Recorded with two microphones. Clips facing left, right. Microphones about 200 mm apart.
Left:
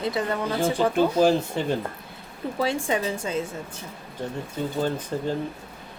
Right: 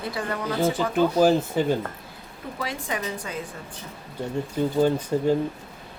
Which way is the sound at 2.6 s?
30° left (ahead or behind).